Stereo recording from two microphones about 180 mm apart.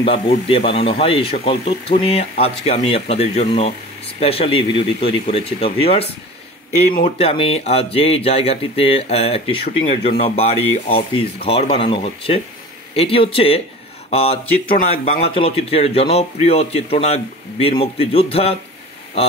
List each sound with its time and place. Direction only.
0.0 s speech: 30° left (ahead or behind)
7.2 s speech: 30° left (ahead or behind)